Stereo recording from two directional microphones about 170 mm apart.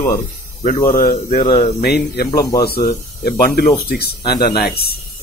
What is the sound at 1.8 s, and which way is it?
Speech, 65° left (ahead or behind).